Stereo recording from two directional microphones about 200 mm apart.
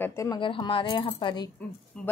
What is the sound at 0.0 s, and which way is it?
Speech, 15° left (ahead or behind).